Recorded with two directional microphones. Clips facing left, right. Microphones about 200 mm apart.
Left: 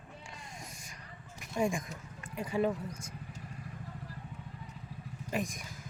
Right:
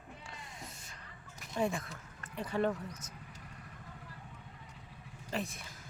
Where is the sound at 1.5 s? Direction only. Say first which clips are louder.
Left 2 dB; 15° left (ahead or behind).